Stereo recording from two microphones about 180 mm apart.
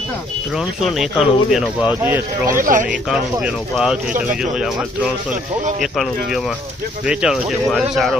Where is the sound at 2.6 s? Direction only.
45° right (ahead or behind).